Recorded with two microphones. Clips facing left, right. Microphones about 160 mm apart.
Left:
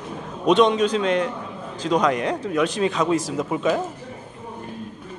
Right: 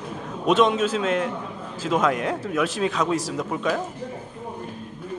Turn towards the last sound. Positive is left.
turn(degrees=0)  # may be behind; listen again after turning